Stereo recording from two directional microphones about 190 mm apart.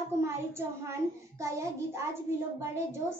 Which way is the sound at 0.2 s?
15° right (ahead or behind).